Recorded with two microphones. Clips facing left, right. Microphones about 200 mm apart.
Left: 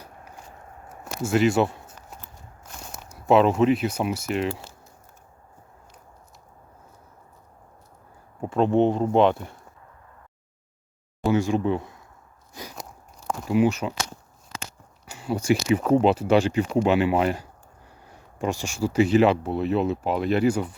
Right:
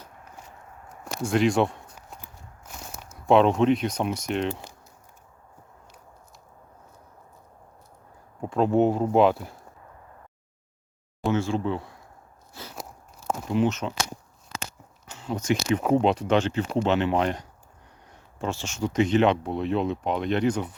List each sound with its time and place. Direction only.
1.0 s a sound: 5° left (ahead or behind)
2.2 s walk: 5° right (ahead or behind)
3.2 s speech: 5° left (ahead or behind)
8.4 s speech: centre (ahead or behind)
11.3 s speech: 15° left (ahead or behind)
12.7 s walk: centre (ahead or behind)
13.6 s speech: 10° left (ahead or behind)
15.0 s speech: 10° left (ahead or behind)